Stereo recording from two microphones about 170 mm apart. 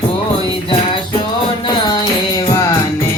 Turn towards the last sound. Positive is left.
turn(degrees=20)  # may be behind; listen again after turning